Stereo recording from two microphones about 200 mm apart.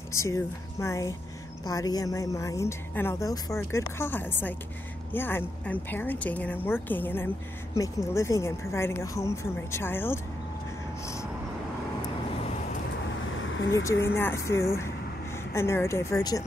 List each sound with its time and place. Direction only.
0.1 s a woman's voice: 15° left (ahead or behind)
13.4 s vehicle: 75° left (ahead or behind)
14.1 s a woman's voice: 10° left (ahead or behind)